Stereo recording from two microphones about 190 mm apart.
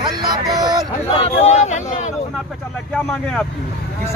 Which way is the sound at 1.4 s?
35° left (ahead or behind).